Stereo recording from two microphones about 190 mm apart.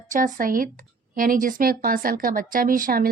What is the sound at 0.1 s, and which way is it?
Speech, 45° right (ahead or behind).